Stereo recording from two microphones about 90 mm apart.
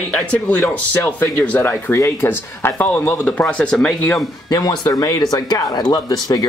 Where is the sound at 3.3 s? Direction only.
15° left (ahead or behind).